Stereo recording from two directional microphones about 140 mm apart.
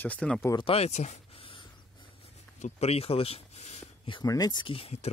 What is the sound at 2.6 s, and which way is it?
Speech, 45° left (ahead or behind).